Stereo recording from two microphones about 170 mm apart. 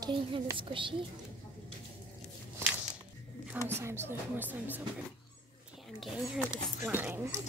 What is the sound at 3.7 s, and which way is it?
A woman's voice, 15° right (ahead or behind).